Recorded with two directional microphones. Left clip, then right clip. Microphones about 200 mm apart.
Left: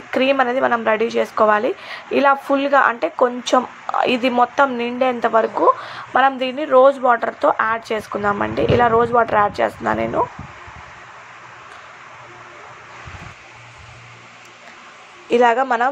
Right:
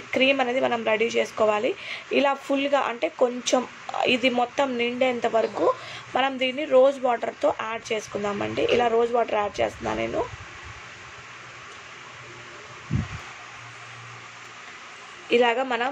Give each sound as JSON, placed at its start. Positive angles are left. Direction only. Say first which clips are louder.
{"t": 0.1, "sound": "speech", "louder": "left 5 dB", "side_deg": 5}
{"t": 15.2, "sound": "a woman's voice", "louder": "left 6 dB", "side_deg": 10}